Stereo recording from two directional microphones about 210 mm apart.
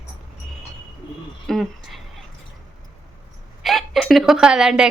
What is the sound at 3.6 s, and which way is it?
Speech, centre (ahead or behind).